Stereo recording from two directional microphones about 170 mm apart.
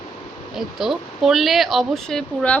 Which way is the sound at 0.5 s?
Centre (ahead or behind).